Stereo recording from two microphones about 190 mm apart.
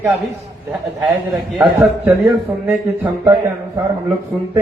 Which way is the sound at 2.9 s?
25° right (ahead or behind).